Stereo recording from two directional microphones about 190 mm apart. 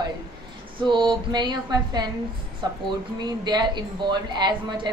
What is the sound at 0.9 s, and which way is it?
A woman's voice, 25° right (ahead or behind).